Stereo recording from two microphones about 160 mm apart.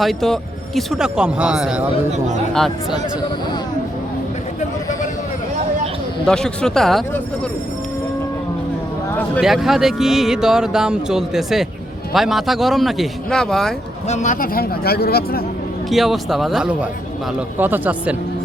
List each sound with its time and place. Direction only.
0.0 s speech: centre (ahead or behind)
2.1 s speech: 50° right (ahead or behind)
2.5 s speech: centre (ahead or behind)
6.2 s speech: 5° left (ahead or behind)
9.4 s speech: centre (ahead or behind)
14.1 s speech: 50° left (ahead or behind); by 15.4 s 75° left (ahead or behind)
15.9 s speech: centre (ahead or behind)